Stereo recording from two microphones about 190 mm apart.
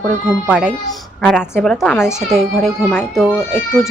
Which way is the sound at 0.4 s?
5° right (ahead or behind).